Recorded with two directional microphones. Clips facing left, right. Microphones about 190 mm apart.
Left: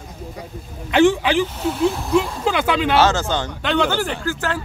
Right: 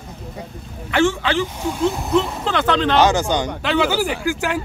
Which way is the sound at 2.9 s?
15° right (ahead or behind).